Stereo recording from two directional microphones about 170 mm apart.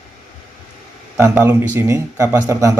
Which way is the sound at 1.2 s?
15° right (ahead or behind).